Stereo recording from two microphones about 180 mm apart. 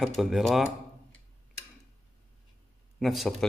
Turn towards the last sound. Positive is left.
turn(degrees=0)  # may be behind; listen again after turning